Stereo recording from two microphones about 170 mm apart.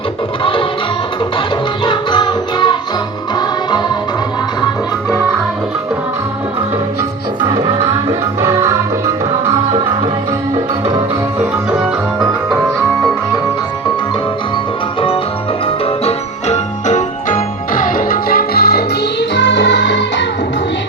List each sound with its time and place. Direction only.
1.8 s music: 30° left (ahead or behind)
8.4 s music: 15° right (ahead or behind)
12.2 s music: centre (ahead or behind)
16.0 s music: 40° left (ahead or behind); by 18.9 s 65° left (ahead or behind)
19.3 s music: 90° left